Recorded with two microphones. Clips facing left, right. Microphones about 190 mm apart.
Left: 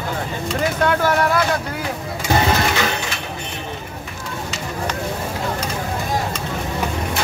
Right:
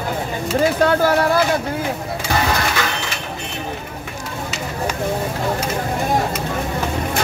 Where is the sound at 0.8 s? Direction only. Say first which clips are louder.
Left 1 dB; 30° right (ahead or behind).